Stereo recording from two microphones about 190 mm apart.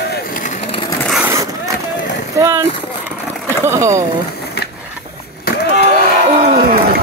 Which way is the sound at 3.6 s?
15° right (ahead or behind).